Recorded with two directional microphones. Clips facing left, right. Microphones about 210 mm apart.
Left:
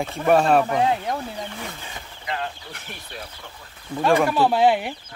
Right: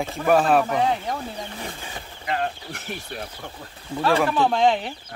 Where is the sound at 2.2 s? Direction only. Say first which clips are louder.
Right 4 dB; 50° right (ahead or behind).